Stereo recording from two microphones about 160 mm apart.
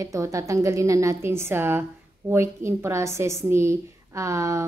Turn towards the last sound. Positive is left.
turn(degrees=-20)  # may be behind; listen again after turning